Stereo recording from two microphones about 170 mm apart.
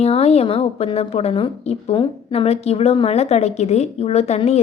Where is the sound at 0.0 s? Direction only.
40° left (ahead or behind).